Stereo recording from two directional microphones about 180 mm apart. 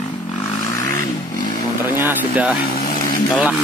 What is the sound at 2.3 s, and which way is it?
Speech, 5° right (ahead or behind).